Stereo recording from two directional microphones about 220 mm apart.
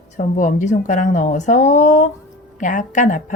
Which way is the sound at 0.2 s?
35° left (ahead or behind).